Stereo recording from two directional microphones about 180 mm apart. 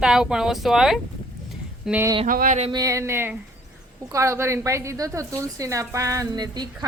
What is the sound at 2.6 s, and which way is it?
A woman's voice, 20° right (ahead or behind).